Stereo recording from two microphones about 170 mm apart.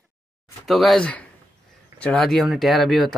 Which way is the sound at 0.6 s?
Centre (ahead or behind).